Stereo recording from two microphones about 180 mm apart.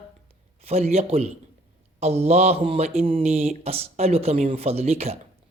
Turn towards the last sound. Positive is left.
turn(degrees=-35)  # may be behind; listen again after turning